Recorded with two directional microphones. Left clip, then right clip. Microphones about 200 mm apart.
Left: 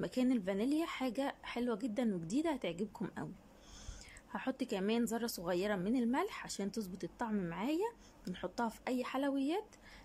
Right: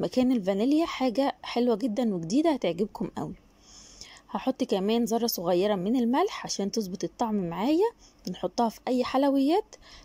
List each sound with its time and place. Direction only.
0.0 s a woman's voice: 15° right (ahead or behind)